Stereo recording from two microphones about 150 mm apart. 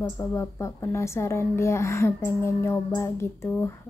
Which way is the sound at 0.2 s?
20° left (ahead or behind).